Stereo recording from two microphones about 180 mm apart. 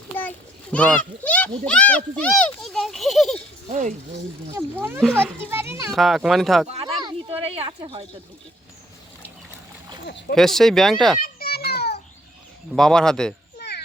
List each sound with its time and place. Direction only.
0.2 s a child's voice: 10° left (ahead or behind)
3.7 s speech: 45° right (ahead or behind)
4.5 s a child's voice: 10° right (ahead or behind)
5.9 s speech: centre (ahead or behind)
6.7 s a sound: 35° right (ahead or behind)
10.1 s speech: 65° left (ahead or behind)
10.3 s speech: centre (ahead or behind)
11.2 s children playing: 55° left (ahead or behind)
12.7 s speech: 5° left (ahead or behind)
13.6 s children playing: 65° left (ahead or behind)